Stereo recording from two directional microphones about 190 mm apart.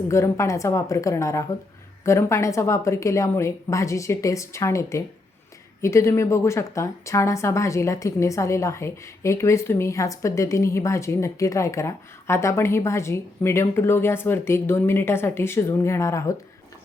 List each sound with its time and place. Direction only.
0.1 s speech: 15° left (ahead or behind)